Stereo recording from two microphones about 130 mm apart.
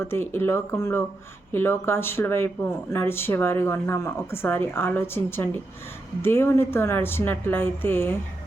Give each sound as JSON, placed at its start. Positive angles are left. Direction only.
{"t": 0.0, "sound": "speech", "side_deg": 20}